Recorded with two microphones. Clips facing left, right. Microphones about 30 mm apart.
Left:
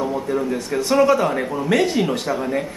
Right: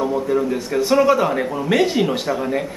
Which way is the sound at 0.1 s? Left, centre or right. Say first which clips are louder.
Right 3 dB; centre.